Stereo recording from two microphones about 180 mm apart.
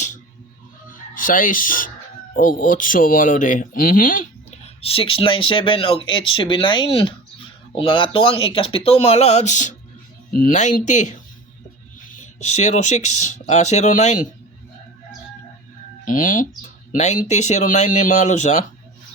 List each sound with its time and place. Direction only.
1.1 s speech: 50° left (ahead or behind)
4.8 s speech: 30° left (ahead or behind)
12.4 s speech: 40° left (ahead or behind)
16.0 s speech: 45° left (ahead or behind)